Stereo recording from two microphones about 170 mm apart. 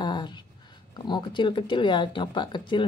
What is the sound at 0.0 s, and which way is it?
Speech, 25° left (ahead or behind).